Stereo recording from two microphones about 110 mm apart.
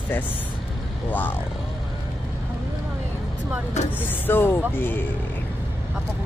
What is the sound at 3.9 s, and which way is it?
Speech, 20° left (ahead or behind).